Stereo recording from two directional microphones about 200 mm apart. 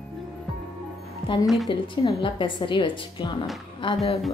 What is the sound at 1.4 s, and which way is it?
Speech, centre (ahead or behind).